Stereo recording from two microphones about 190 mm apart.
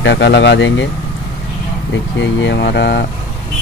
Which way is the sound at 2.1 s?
70° left (ahead or behind).